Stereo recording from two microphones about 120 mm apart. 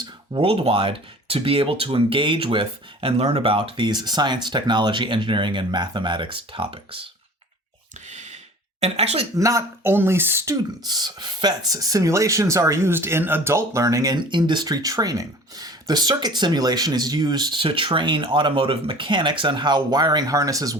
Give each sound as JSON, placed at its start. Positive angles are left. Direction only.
{"t": 0.0, "sound": "speech", "side_deg": -45}
{"t": 8.0, "sound": "a sound", "side_deg": -75}
{"t": 8.8, "sound": "speech", "side_deg": -60}
{"t": 9.3, "sound": "speech", "side_deg": -25}